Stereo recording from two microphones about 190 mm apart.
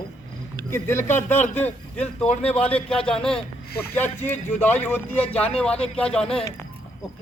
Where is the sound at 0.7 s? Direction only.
15° left (ahead or behind).